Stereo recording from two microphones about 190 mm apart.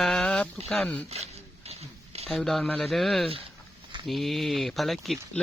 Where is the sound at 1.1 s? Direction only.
35° right (ahead or behind).